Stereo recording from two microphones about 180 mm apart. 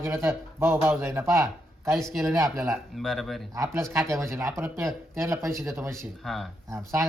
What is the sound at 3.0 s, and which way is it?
Speech, centre (ahead or behind).